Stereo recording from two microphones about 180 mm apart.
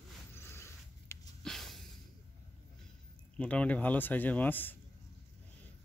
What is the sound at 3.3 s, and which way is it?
A man's voice, 5° left (ahead or behind).